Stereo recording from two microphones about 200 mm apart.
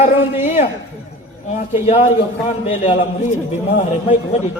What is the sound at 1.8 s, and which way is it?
A man's voice, 35° left (ahead or behind).